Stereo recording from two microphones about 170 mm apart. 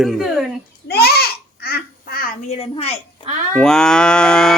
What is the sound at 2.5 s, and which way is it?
Speech, 35° left (ahead or behind).